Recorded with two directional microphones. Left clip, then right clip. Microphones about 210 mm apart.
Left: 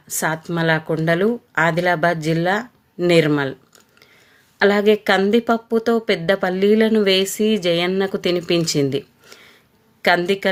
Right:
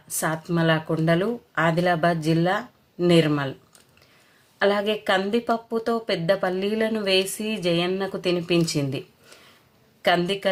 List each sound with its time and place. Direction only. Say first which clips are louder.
0.2 s speech: left 4 dB; 35° left (ahead or behind)
4.5 s speech: left 7 dB; 35° left (ahead or behind)